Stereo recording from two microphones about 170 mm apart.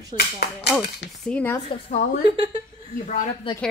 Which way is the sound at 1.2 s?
10° left (ahead or behind).